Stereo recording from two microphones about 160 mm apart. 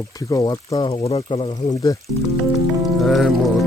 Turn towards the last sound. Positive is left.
turn(degrees=0)  # may be behind; listen again after turning